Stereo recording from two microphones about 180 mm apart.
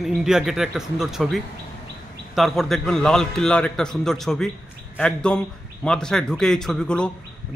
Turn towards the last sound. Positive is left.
turn(degrees=5)  # may be behind; listen again after turning